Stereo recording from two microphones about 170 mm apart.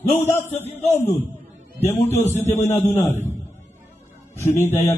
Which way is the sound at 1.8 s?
15° left (ahead or behind).